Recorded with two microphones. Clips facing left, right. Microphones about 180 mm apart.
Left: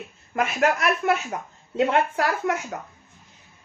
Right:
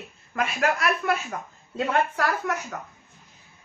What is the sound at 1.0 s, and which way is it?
A woman's voice, 25° left (ahead or behind).